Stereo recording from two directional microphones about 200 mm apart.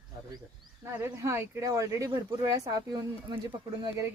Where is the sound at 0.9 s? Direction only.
15° right (ahead or behind).